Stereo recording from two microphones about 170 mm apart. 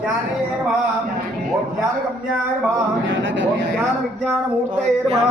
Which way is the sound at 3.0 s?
90° right.